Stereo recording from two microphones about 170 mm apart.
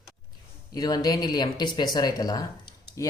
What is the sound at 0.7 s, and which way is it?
Speech, 25° left (ahead or behind).